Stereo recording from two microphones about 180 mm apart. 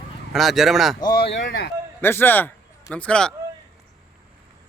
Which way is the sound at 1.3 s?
70° left (ahead or behind).